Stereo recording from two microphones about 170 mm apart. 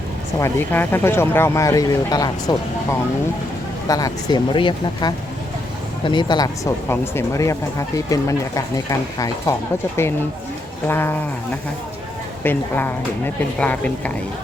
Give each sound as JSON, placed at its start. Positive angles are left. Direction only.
{"t": 0.3, "sound": "speech", "side_deg": 15}
{"t": 10.8, "sound": "speech", "side_deg": 15}
{"t": 12.4, "sound": "speech", "side_deg": 10}